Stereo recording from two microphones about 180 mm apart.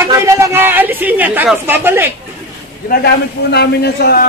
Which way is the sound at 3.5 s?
65° left (ahead or behind).